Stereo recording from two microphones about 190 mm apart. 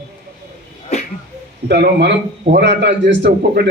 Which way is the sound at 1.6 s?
65° right (ahead or behind).